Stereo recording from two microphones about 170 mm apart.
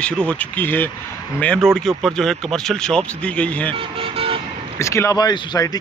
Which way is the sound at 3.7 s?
35° right (ahead or behind).